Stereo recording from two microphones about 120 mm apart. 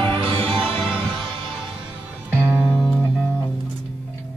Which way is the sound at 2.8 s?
Centre (ahead or behind).